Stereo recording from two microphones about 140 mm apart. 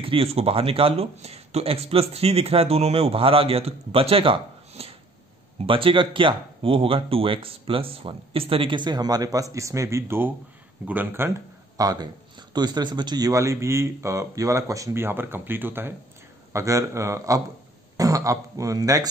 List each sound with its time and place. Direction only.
0.0 s a man's voice: 40° right (ahead or behind); by 19.0 s 25° right (ahead or behind)